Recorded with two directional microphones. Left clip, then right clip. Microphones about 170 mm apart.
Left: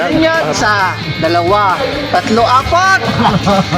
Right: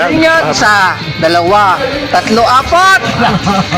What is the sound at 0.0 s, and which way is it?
Music, 30° right (ahead or behind).